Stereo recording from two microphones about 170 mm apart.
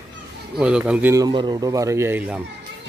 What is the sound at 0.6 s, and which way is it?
Speech, 5° right (ahead or behind).